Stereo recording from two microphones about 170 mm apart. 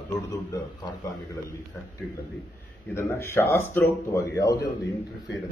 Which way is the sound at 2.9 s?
15° left (ahead or behind).